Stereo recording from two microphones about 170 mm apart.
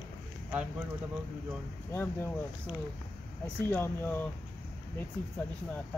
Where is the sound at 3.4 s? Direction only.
10° left (ahead or behind).